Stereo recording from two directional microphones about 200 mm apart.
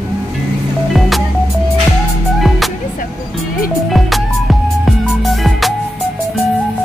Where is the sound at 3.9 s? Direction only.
Centre (ahead or behind).